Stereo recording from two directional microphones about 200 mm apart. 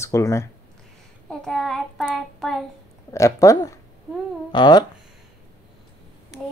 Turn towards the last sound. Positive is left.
turn(degrees=20)  # may be behind; listen again after turning